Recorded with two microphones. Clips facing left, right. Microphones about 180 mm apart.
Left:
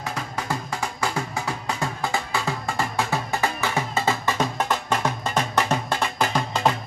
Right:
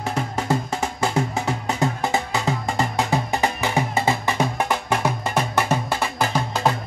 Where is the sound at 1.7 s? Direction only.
20° right (ahead or behind).